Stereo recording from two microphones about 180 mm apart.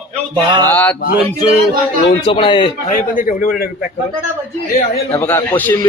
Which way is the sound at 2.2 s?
30° left (ahead or behind).